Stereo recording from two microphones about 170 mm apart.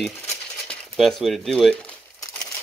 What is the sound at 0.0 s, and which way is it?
Coin, centre (ahead or behind).